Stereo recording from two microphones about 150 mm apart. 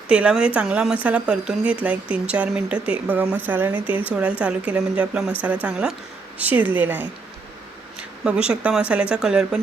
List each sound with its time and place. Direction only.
0.1 s speech: 5° right (ahead or behind)